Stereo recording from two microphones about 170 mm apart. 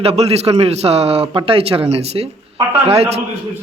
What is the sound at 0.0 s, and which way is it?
A man's voice, 35° right (ahead or behind).